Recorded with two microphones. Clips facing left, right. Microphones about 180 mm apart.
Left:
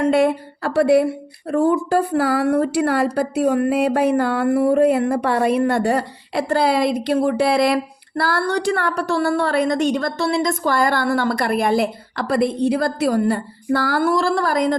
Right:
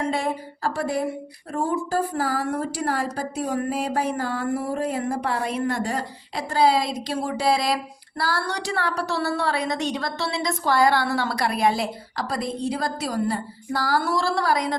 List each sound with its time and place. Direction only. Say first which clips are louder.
0.0 s a woman's voice: left 9 dB; 65° left (ahead or behind)